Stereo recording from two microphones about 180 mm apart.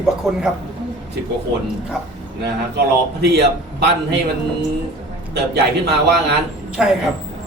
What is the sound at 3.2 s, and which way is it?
Speech, 65° right (ahead or behind).